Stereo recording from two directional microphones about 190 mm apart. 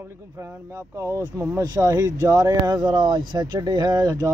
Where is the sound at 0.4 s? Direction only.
15° right (ahead or behind).